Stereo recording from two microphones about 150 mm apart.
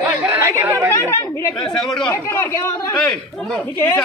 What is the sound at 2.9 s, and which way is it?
Speech, centre (ahead or behind).